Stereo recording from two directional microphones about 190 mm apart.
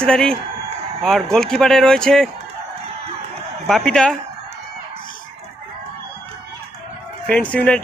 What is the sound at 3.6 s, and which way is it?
Speech, centre (ahead or behind).